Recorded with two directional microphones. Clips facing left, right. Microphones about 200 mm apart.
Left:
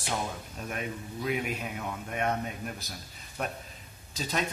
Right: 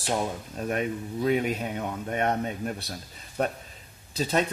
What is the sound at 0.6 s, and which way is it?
Speech, 40° right (ahead or behind).